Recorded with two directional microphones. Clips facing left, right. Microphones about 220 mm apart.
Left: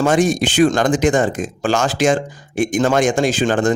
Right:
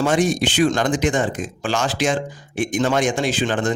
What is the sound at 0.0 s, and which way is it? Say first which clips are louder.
Speech: left 3 dB; 45° left (ahead or behind).